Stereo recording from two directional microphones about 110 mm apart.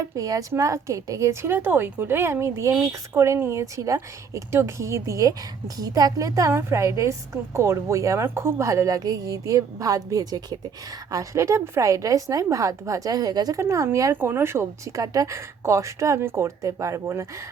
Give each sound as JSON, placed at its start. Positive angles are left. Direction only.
{"t": 0.2, "sound": "a woman's voice", "side_deg": -30}
{"t": 13.6, "sound": "speech", "side_deg": -25}